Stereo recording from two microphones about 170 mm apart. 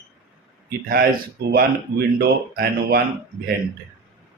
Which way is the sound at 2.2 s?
65° right (ahead or behind).